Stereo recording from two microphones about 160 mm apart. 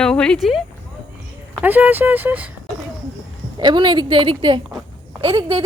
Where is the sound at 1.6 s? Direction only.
10° right (ahead or behind).